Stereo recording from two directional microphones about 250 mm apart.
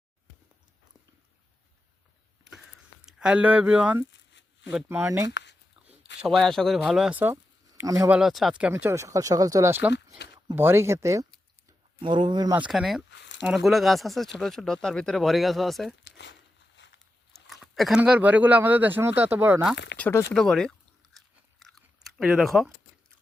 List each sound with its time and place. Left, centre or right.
3.1 s speech: centre
4.1 s shuffling cards: left
4.7 s speech: centre
6.2 s speech: centre
13.1 s a sound: left
13.4 s speech: centre
16.0 s a sound: left
17.3 s speech: centre
19.7 s speech: left
20.0 s chewing: centre
22.2 s speech: centre